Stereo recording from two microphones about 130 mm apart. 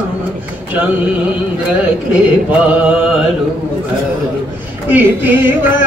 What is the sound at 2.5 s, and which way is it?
Music, 10° right (ahead or behind).